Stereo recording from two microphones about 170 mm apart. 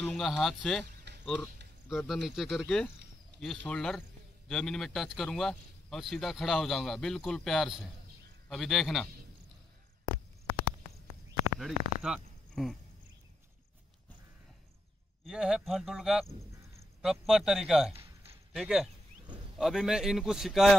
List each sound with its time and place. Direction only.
0.0 s a man's voice: 5° left (ahead or behind)
10.4 s a sound: 90° left
11.6 s speech: 5° right (ahead or behind)
15.2 s a man's voice: 5° right (ahead or behind)